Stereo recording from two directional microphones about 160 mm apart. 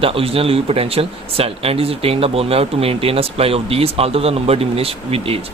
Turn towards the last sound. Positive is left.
turn(degrees=-35)  # may be behind; listen again after turning